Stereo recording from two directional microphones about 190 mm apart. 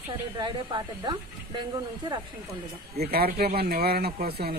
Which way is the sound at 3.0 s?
55° right (ahead or behind).